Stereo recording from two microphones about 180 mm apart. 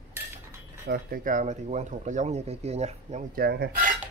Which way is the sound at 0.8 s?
55° right (ahead or behind).